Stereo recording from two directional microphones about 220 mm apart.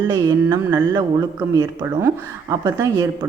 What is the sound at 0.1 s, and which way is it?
Speech, 15° right (ahead or behind).